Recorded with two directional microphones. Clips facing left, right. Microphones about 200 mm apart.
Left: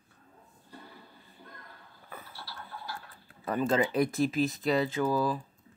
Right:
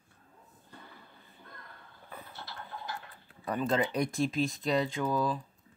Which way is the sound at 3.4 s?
5° left (ahead or behind).